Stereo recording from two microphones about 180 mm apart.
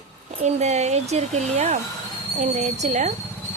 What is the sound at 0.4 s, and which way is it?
A woman's voice, 40° right (ahead or behind).